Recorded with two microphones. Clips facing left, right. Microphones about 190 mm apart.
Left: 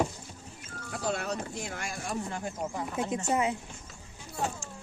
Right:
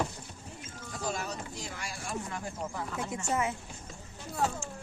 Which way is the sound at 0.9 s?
65° left (ahead or behind).